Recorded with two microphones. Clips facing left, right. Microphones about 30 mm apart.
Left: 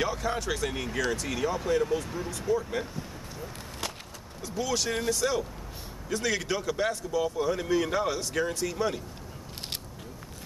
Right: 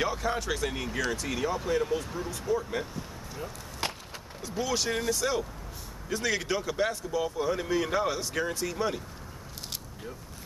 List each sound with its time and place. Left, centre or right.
0.0 s speech: centre
3.8 s wood: right
4.4 s speech: centre